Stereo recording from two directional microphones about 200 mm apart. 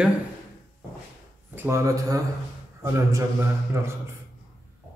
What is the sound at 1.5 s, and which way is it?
Speech, 10° right (ahead or behind).